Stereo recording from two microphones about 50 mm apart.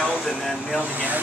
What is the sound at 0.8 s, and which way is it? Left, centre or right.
Speech, right.